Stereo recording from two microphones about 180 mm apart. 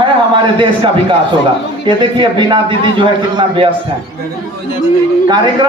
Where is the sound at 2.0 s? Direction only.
25° right (ahead or behind).